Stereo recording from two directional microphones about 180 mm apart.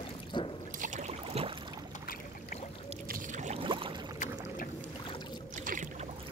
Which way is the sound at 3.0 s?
50° right (ahead or behind).